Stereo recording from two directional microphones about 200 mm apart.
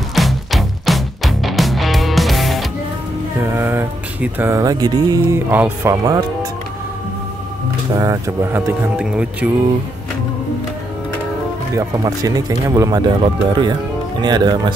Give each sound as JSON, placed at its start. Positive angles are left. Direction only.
{"t": 0.1, "sound": "music", "side_deg": 0}
{"t": 3.5, "sound": "music", "side_deg": -10}
{"t": 8.0, "sound": "speech", "side_deg": -15}
{"t": 11.7, "sound": "speech", "side_deg": -15}